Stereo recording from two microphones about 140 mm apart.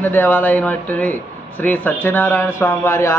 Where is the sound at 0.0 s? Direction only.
15° left (ahead or behind).